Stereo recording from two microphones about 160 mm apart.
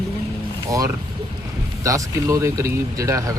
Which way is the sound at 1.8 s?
20° right (ahead or behind).